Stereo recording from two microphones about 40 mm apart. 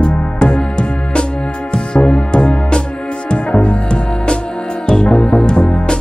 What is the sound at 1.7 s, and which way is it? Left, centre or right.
Music, left.